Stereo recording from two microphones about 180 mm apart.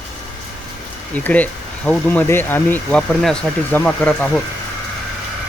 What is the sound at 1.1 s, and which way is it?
Speech, 10° left (ahead or behind).